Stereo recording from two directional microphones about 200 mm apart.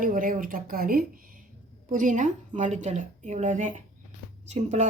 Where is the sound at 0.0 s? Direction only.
40° right (ahead or behind).